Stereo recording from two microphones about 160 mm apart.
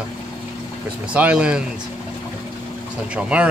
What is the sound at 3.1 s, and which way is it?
Speech, 10° right (ahead or behind).